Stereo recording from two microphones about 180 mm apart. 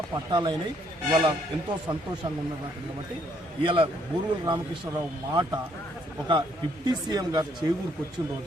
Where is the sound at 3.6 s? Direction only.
30° right (ahead or behind).